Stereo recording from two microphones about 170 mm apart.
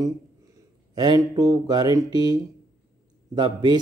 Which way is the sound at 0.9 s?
25° right (ahead or behind).